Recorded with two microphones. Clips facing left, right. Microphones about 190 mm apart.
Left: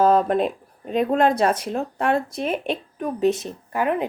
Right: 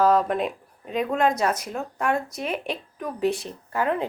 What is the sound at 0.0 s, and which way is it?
A woman's voice, 30° left (ahead or behind).